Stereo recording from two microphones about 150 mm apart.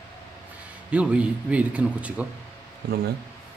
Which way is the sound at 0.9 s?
10° right (ahead or behind).